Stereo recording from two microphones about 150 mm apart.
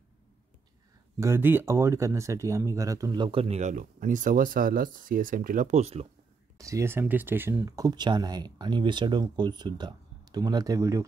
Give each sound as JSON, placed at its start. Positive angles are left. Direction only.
{"t": 1.2, "sound": "speech", "side_deg": -15}
{"t": 6.6, "sound": "speech", "side_deg": -20}